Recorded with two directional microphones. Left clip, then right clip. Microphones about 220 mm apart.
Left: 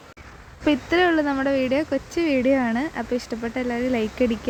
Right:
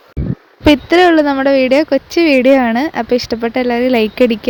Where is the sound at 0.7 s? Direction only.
35° right (ahead or behind).